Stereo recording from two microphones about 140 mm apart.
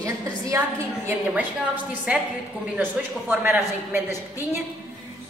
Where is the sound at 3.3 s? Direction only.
15° right (ahead or behind).